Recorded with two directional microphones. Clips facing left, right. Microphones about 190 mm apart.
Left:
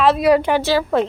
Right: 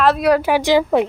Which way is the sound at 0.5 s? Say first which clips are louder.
Right 2 dB; 15° right (ahead or behind).